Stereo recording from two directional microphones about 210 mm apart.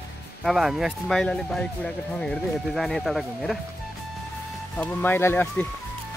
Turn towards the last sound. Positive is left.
turn(degrees=10)  # may be behind; listen again after turning